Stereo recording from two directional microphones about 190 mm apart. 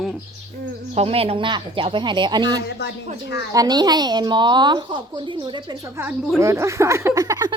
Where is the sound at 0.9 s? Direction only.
30° right (ahead or behind).